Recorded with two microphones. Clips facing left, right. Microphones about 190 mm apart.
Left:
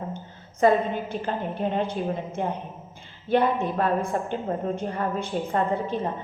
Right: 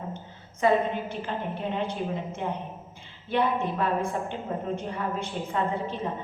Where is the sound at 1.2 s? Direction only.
45° left (ahead or behind).